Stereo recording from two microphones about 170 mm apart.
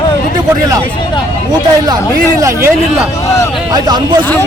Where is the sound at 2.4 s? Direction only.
15° right (ahead or behind).